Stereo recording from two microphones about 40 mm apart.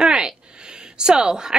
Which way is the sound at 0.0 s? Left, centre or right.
Right.